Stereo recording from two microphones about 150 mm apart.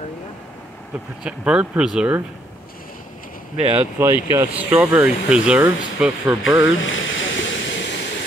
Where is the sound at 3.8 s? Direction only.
15° right (ahead or behind).